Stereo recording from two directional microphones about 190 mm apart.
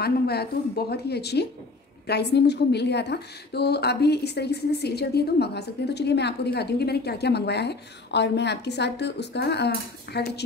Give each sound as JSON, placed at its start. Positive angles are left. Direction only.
{"t": 0.0, "sound": "a woman's voice", "side_deg": 55}